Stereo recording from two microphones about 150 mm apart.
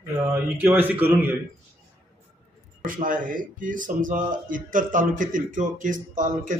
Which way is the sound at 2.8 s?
65° right (ahead or behind).